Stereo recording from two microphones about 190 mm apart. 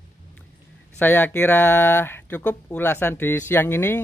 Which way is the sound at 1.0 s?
10° left (ahead or behind).